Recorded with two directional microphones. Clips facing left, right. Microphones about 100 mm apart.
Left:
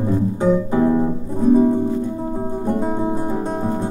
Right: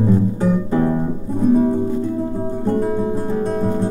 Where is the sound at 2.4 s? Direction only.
20° left (ahead or behind).